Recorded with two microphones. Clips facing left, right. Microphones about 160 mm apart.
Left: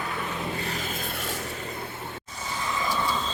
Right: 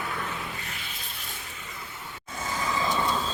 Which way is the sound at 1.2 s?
75° left (ahead or behind).